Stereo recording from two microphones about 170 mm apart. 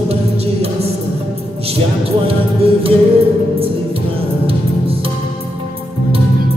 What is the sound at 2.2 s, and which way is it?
Music, 35° right (ahead or behind).